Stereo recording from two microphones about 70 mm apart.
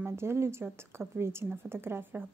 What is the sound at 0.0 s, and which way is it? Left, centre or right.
Speech, right.